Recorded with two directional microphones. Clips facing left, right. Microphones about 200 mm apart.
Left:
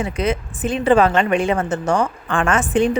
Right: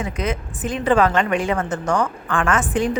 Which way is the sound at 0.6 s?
25° left (ahead or behind).